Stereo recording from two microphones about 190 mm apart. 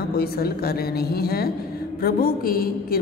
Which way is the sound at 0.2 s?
55° left (ahead or behind).